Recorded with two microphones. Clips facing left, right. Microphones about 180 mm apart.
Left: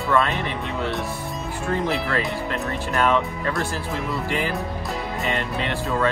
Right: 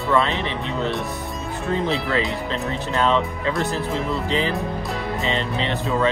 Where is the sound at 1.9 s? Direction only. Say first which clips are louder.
Right 2 dB; 20° right (ahead or behind).